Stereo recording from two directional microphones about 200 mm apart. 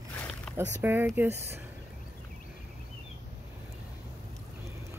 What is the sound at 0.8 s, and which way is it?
Speech, 10° right (ahead or behind).